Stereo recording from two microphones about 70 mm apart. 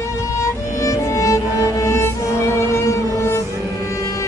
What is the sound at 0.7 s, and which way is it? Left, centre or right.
Music, left.